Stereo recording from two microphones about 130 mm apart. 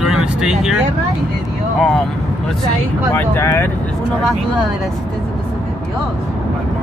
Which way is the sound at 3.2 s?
20° left (ahead or behind).